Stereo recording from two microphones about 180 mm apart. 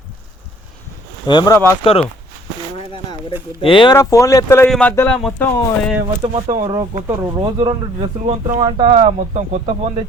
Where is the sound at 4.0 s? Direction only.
15° left (ahead or behind); by 5.4 s centre (ahead or behind).